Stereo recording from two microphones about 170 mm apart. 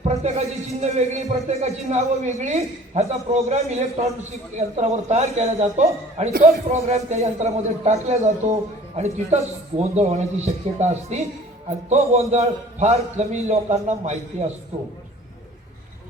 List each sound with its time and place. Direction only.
0.1 s a man's voice: 40° right (ahead or behind)